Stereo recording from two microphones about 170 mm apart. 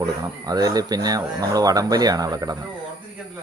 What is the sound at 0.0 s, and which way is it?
Speech, 20° right (ahead or behind).